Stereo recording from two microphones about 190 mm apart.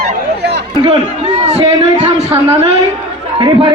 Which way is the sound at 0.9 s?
35° right (ahead or behind).